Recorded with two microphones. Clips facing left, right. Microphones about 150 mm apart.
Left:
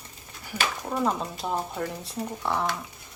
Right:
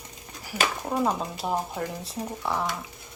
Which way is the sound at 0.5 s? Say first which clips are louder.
Right 2 dB; 25° right (ahead or behind).